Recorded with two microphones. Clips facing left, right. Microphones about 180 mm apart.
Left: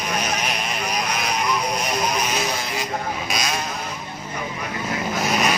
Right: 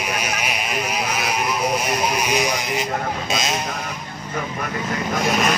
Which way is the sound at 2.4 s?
15° right (ahead or behind).